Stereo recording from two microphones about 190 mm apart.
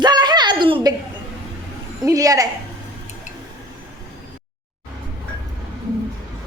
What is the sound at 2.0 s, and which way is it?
Speech, 20° right (ahead or behind).